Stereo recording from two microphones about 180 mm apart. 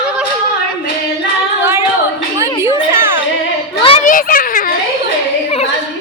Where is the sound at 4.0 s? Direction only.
50° left (ahead or behind).